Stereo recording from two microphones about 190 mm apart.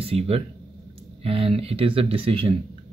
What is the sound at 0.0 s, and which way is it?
Speech, 30° right (ahead or behind).